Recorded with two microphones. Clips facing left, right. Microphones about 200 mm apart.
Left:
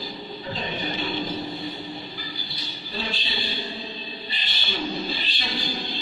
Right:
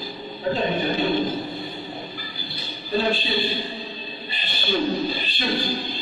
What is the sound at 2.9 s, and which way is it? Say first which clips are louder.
A man's voice: right 11 dB; 50° right (ahead or behind).